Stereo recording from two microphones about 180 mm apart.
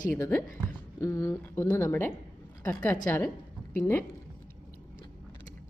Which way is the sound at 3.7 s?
10° left (ahead or behind).